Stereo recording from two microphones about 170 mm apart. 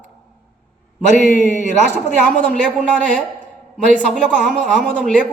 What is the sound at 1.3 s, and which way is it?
Speech, 45° left (ahead or behind).